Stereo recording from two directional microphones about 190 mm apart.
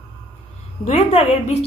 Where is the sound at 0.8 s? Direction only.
40° left (ahead or behind).